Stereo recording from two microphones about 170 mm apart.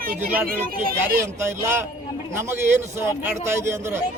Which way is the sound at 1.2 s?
15° right (ahead or behind).